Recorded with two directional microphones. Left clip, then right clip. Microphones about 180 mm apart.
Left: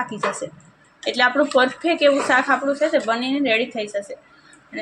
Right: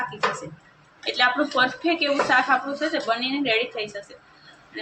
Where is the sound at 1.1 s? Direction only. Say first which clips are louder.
Left 3 dB; 35° left (ahead or behind).